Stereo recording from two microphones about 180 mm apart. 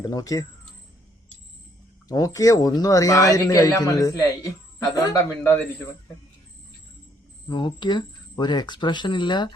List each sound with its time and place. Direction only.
0.0 s a man's voice: 20° left (ahead or behind)
2.0 s a man's voice: 20° left (ahead or behind)
7.4 s a man's voice: 25° left (ahead or behind)